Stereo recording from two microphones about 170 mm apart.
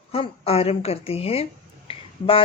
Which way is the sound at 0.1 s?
35° left (ahead or behind).